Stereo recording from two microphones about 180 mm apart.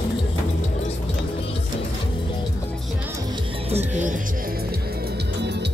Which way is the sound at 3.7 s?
40° right (ahead or behind).